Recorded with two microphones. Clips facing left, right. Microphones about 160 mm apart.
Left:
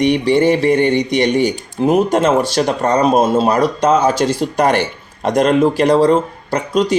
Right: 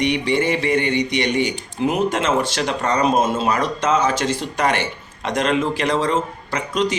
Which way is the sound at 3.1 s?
35° left (ahead or behind).